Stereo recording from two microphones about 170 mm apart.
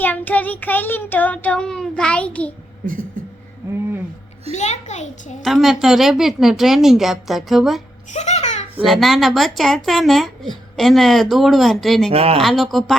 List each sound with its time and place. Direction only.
0.0 s child singing: 10° left (ahead or behind)
4.5 s a child's voice: 40° left (ahead or behind)
5.4 s speech: centre (ahead or behind)
8.1 s a sound: 40° left (ahead or behind)
8.8 s speech: centre (ahead or behind)
12.1 s speech: 35° right (ahead or behind)
12.4 s speech: centre (ahead or behind)